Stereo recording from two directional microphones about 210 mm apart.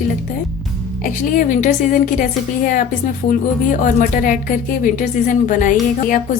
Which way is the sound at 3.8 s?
40° left (ahead or behind).